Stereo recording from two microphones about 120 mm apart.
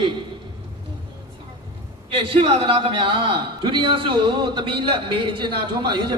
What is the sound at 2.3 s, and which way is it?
A man's voice, 50° right (ahead or behind).